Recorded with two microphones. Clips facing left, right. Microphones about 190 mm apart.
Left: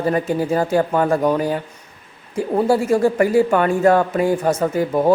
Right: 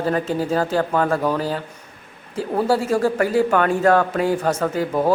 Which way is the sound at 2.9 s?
10° left (ahead or behind).